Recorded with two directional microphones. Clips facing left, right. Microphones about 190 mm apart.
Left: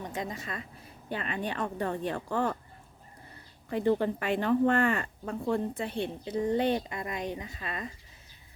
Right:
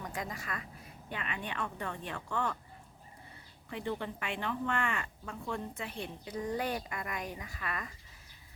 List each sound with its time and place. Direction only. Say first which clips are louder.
0.0 s speech: left 4 dB; 25° left (ahead or behind)
3.7 s speech: left 10 dB; 40° left (ahead or behind); by 7.9 s 25° left (ahead or behind)